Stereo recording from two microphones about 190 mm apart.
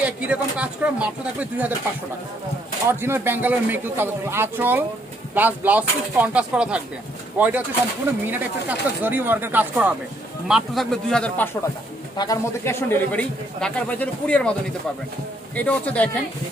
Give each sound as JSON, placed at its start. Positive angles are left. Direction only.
{"t": 0.0, "sound": "a man's voice", "side_deg": -5}
{"t": 2.9, "sound": "a man's voice", "side_deg": -10}
{"t": 15.5, "sound": "speech", "side_deg": 10}